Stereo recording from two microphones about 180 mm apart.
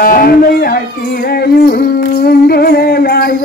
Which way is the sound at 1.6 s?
60° left (ahead or behind).